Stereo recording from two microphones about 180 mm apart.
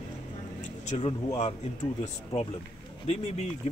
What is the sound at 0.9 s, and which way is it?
Speech, 30° left (ahead or behind).